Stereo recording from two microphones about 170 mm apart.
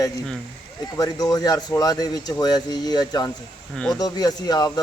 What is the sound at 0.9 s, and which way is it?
Speech, 20° left (ahead or behind).